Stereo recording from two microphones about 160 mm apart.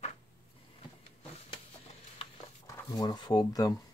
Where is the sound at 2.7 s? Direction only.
25° left (ahead or behind).